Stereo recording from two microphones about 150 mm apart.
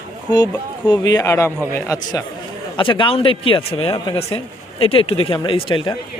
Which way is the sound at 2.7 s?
35° left (ahead or behind).